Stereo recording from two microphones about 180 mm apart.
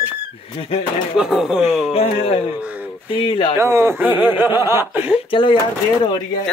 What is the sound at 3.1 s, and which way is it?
Speech, 30° left (ahead or behind).